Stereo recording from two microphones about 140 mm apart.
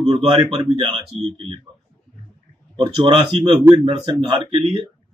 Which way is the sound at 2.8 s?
35° right (ahead or behind).